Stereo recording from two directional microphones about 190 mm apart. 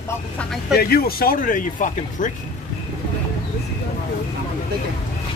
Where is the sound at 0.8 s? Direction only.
50° left (ahead or behind).